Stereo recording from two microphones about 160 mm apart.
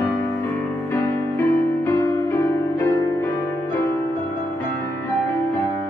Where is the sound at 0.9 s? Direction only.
15° left (ahead or behind).